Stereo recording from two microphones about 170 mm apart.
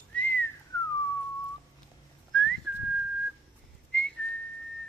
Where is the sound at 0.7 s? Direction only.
20° left (ahead or behind).